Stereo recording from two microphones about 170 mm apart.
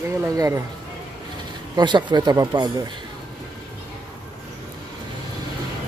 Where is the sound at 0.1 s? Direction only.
15° right (ahead or behind).